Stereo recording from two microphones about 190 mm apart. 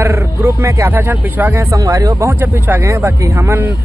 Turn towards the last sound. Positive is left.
turn(degrees=-10)  # may be behind; listen again after turning